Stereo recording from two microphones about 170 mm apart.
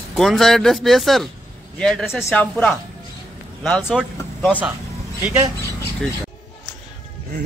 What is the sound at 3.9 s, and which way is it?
Speech, centre (ahead or behind).